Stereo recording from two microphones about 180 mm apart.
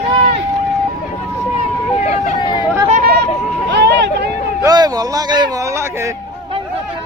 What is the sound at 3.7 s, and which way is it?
Vehicle, 70° right (ahead or behind).